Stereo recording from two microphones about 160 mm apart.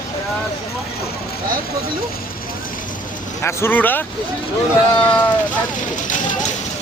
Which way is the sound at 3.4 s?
15° left (ahead or behind).